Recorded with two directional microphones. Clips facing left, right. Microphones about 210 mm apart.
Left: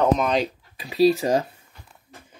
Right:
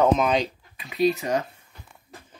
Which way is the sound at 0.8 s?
30° left (ahead or behind).